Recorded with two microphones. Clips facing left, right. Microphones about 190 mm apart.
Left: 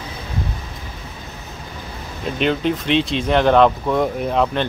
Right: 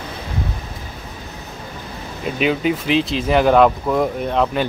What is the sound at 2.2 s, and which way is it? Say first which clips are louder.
Speech: right 1 dB; 5° right (ahead or behind).